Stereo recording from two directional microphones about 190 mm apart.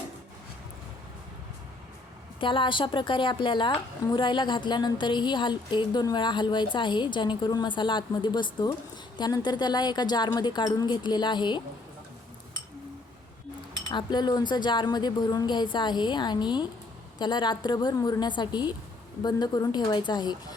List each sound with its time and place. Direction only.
2.4 s a woman's voice: 25° left (ahead or behind)
13.9 s a woman's voice: 20° left (ahead or behind)